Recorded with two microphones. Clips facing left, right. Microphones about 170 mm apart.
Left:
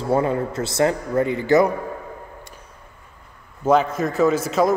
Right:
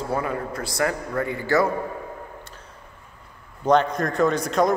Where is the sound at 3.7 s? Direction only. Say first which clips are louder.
Left 1 dB; 5° left (ahead or behind).